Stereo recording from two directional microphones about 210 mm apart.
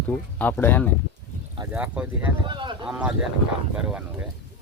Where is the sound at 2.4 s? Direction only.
20° right (ahead or behind).